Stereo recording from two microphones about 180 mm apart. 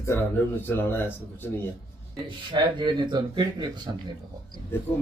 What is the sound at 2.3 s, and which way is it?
Speech, 25° right (ahead or behind).